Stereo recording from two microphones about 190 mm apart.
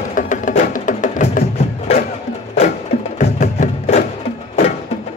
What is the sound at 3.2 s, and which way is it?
Music, 35° left (ahead or behind).